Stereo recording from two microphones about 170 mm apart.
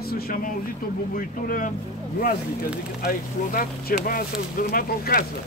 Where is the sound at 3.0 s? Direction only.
60° left (ahead or behind).